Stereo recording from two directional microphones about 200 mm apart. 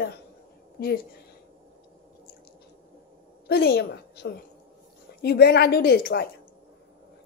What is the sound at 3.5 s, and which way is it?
A woman's voice, 55° left (ahead or behind).